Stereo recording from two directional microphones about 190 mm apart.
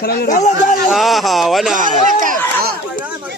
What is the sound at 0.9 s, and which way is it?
Speech, centre (ahead or behind).